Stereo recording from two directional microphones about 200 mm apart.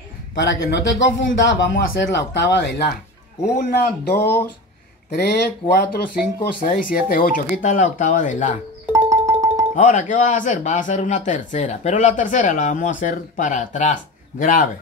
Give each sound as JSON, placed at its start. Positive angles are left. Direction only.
{"t": 0.4, "sound": "speech", "side_deg": 60}
{"t": 3.5, "sound": "speech", "side_deg": 50}
{"t": 8.9, "sound": "music", "side_deg": -15}
{"t": 9.8, "sound": "a man's voice", "side_deg": 40}